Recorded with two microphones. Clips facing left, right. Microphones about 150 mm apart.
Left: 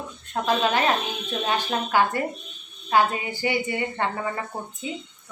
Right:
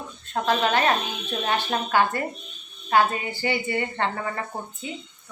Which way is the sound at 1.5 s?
15° left (ahead or behind).